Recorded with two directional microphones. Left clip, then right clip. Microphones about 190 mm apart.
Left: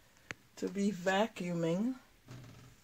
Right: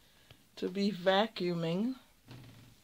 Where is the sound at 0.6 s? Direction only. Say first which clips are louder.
Right 2 dB; 15° right (ahead or behind).